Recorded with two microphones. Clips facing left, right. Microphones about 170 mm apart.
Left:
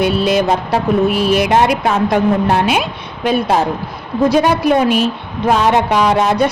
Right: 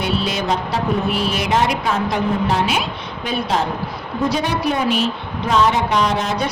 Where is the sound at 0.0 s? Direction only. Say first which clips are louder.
Left 8 dB; 55° left (ahead or behind).